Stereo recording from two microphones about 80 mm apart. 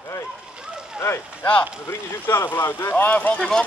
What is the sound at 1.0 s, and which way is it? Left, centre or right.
Speech, left.